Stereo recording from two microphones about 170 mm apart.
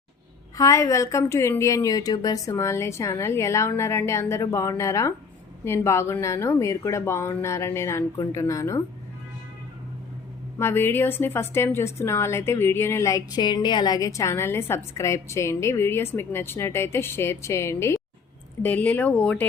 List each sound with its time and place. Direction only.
0.5 s a woman's voice: 20° left (ahead or behind)
10.6 s a woman's voice: 15° left (ahead or behind)